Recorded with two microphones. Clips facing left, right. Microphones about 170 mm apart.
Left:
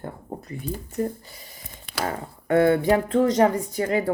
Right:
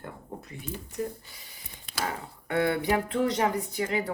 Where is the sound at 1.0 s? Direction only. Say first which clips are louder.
Left 6 dB; 55° left (ahead or behind).